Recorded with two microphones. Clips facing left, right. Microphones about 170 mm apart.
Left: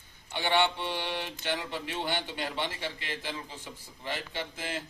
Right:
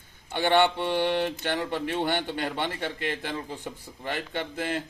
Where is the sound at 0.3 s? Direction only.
50° right (ahead or behind).